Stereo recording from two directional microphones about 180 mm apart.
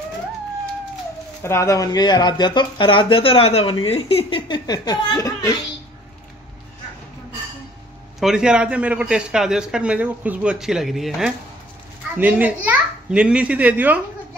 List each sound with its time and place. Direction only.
1.4 s speech: 15° left (ahead or behind)
8.2 s a man's voice: 5° right (ahead or behind)